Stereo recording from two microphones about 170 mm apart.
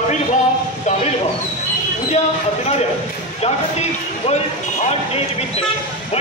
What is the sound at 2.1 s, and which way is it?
Speech, 40° left (ahead or behind).